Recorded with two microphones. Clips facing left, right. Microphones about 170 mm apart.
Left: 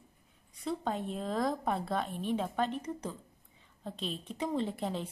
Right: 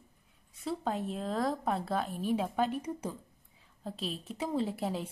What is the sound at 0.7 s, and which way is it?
A woman's voice, 5° right (ahead or behind).